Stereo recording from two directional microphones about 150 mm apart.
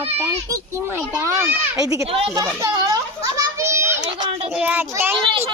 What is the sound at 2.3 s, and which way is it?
Children playing, 25° right (ahead or behind).